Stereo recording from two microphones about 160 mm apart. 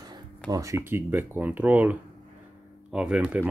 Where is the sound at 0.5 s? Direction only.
20° right (ahead or behind).